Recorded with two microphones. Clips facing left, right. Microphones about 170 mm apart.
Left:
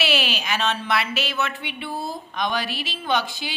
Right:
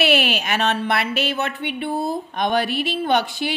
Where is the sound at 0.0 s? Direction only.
60° right (ahead or behind).